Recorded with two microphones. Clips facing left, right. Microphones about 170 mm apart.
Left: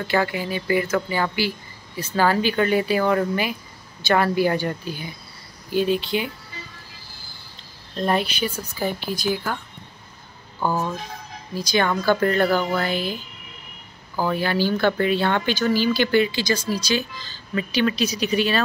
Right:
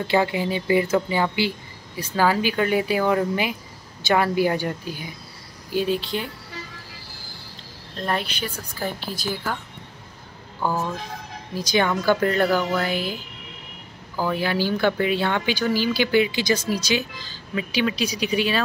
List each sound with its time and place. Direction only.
0.1 s speech: 20° right (ahead or behind); by 6.3 s 5° left (ahead or behind)
8.0 s speech: 10° left (ahead or behind)
9.2 s speech: centre (ahead or behind)
10.6 s speech: 5° left (ahead or behind)
11.7 s speech: 15° right (ahead or behind)
14.3 s speech: 10° right (ahead or behind)